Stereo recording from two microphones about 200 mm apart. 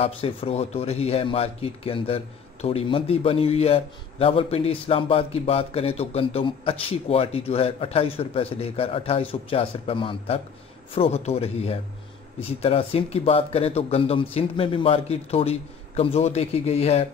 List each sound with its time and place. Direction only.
0.0 s speech: 30° left (ahead or behind)